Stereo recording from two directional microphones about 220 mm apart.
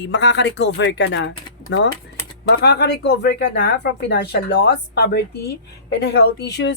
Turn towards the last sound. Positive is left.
turn(degrees=50)  # may be behind; listen again after turning